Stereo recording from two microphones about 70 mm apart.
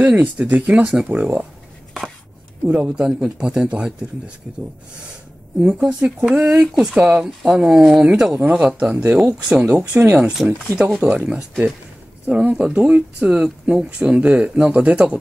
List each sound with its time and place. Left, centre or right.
0.0 s speech: right
1.0 s speech: right
2.6 s speech: centre
5.9 s speech: centre
9.8 s speech: right